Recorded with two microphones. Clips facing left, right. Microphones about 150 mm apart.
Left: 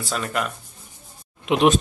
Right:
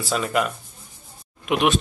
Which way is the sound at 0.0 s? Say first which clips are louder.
Right 3 dB; 5° right (ahead or behind).